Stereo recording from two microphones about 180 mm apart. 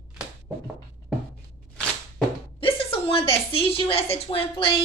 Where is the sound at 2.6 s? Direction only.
35° left (ahead or behind).